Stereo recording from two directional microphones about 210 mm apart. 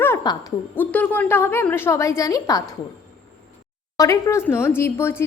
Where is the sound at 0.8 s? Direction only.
10° left (ahead or behind).